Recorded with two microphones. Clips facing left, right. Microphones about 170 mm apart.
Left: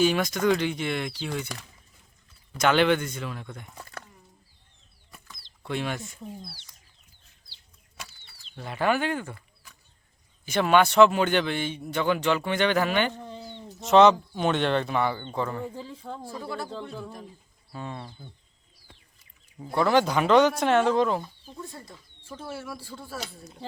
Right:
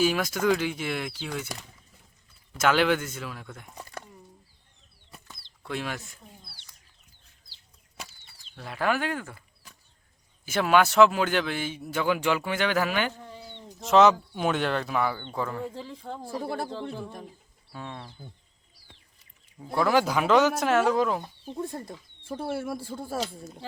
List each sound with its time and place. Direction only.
0.0 s a man's voice: 5° right (ahead or behind)
2.6 s a man's voice: 5° right (ahead or behind)
5.6 s a man's voice: centre (ahead or behind)
8.5 s a man's voice: centre (ahead or behind)
10.4 s a man's voice: 5° right (ahead or behind)
16.4 s speech: 55° right (ahead or behind)
17.7 s speech: centre (ahead or behind)
19.5 s a man's voice: centre (ahead or behind)
21.4 s speech: 60° right (ahead or behind)